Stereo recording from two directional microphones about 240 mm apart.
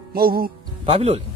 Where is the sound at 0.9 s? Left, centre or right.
Right.